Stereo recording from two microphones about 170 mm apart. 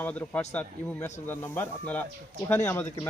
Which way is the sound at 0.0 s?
10° left (ahead or behind).